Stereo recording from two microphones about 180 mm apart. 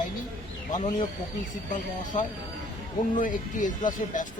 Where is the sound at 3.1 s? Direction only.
50° left (ahead or behind).